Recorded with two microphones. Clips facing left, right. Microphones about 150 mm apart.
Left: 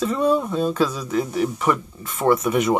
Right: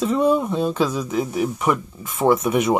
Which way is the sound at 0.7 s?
15° right (ahead or behind).